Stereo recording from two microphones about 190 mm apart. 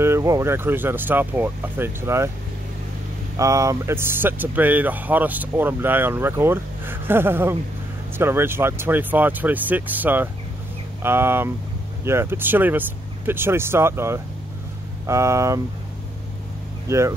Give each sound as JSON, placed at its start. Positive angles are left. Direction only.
{"t": 0.0, "sound": "speech", "side_deg": -15}
{"t": 3.3, "sound": "speech", "side_deg": -15}
{"t": 16.8, "sound": "speech", "side_deg": -15}